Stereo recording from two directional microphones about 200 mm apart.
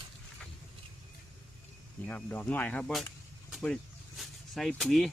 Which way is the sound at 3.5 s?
Centre (ahead or behind).